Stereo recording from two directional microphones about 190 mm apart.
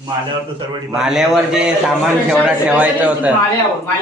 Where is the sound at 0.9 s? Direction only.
5° right (ahead or behind).